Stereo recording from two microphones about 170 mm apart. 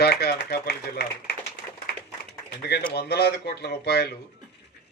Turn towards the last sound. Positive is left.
turn(degrees=70)  # may be behind; listen again after turning